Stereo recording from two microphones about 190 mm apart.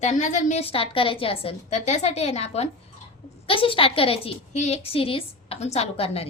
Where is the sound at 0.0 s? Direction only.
40° left (ahead or behind).